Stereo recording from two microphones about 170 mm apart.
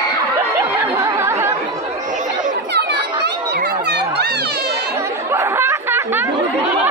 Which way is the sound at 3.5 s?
75° right (ahead or behind).